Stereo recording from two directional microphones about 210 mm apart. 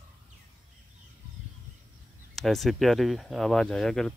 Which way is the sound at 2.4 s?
Centre (ahead or behind).